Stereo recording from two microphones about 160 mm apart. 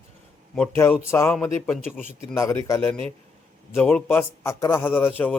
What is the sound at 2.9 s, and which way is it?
A man's voice, 10° left (ahead or behind).